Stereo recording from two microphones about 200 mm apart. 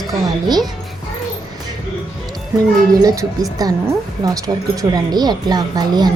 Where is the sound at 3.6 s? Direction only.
20° right (ahead or behind).